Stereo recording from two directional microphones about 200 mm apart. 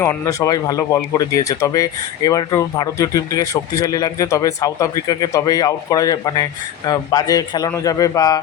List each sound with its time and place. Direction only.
0.0 s speech: 15° left (ahead or behind)